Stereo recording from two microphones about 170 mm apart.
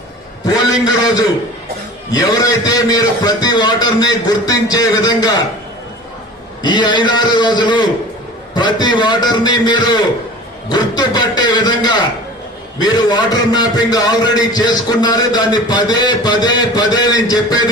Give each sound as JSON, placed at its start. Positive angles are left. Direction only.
{"t": 0.4, "sound": "a sound", "side_deg": 20}
{"t": 2.2, "sound": "a man's voice", "side_deg": 20}
{"t": 6.6, "sound": "a man's voice", "side_deg": 25}